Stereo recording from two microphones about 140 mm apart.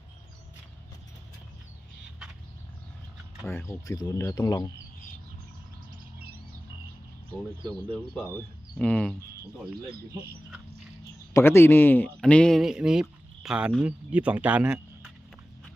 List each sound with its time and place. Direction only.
3.4 s speech: 20° left (ahead or behind)
8.8 s speech: 5° left (ahead or behind)
11.3 s speech: 20° left (ahead or behind); by 15.1 s 5° right (ahead or behind)